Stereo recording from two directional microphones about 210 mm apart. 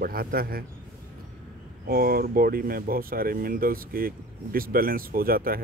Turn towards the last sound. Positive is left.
turn(degrees=-45)  # may be behind; listen again after turning